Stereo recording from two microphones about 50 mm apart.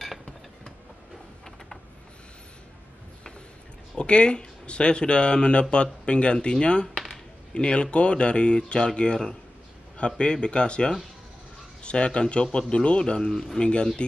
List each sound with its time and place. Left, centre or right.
3.9 s speech: left